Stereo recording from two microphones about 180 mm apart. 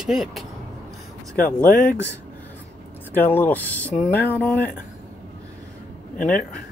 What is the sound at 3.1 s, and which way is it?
Speech, 10° left (ahead or behind).